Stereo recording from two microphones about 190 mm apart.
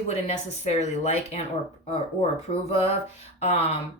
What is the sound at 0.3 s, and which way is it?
Speech, 35° left (ahead or behind).